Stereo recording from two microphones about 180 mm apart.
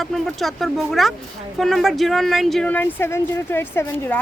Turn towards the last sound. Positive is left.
turn(degrees=10)  # may be behind; listen again after turning